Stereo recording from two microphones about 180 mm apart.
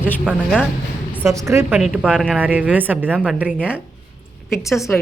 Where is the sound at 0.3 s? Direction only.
5° right (ahead or behind).